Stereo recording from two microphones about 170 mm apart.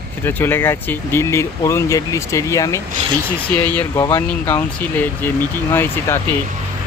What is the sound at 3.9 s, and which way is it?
Speech, 20° left (ahead or behind).